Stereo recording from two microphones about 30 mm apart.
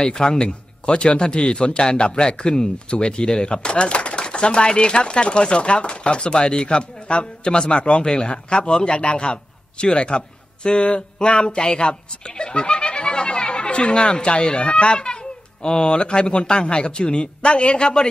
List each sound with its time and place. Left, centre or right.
0.2 s a man's voice: left
11.3 s a man's voice: left